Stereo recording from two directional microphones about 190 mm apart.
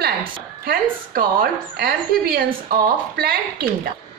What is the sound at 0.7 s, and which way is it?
A woman's voice, 50° right (ahead or behind).